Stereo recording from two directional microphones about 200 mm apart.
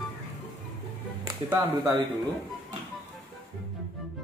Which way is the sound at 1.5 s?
10° right (ahead or behind).